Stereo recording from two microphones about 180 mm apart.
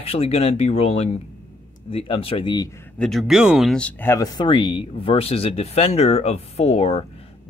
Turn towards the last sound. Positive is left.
turn(degrees=35)  # may be behind; listen again after turning